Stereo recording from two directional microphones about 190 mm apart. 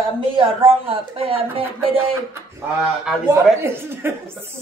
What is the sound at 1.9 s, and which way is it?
Speech, 15° right (ahead or behind).